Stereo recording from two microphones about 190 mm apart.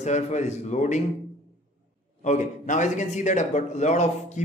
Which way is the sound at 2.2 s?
40° left (ahead or behind).